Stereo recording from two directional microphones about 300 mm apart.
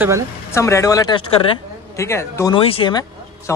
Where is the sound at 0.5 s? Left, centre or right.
Centre.